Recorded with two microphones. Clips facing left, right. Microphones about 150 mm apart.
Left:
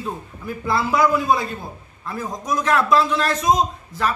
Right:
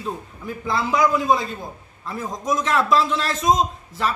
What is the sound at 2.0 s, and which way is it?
Speech, 25° right (ahead or behind).